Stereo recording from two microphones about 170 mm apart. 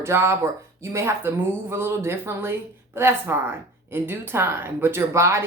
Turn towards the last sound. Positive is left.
turn(degrees=-15)  # may be behind; listen again after turning